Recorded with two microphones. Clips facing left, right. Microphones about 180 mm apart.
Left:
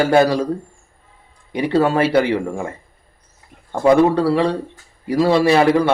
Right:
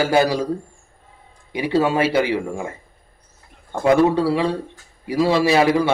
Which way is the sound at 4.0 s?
Centre (ahead or behind).